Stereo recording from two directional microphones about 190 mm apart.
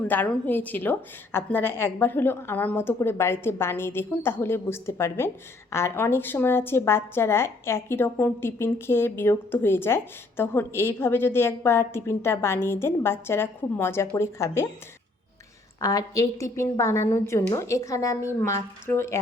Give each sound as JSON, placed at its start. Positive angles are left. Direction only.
{"t": 0.0, "sound": "a woman's voice", "side_deg": 10}
{"t": 15.8, "sound": "a woman's voice", "side_deg": 15}